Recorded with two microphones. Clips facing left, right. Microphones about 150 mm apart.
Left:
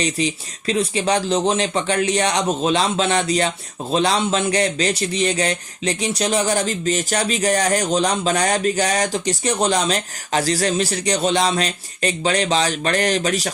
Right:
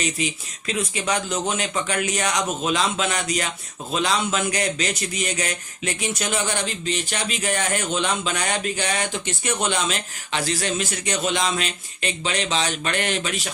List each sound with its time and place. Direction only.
0.0 s a man's voice: 35° left (ahead or behind)